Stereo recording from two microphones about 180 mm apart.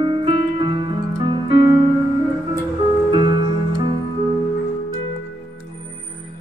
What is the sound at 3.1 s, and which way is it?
Music, 30° right (ahead or behind).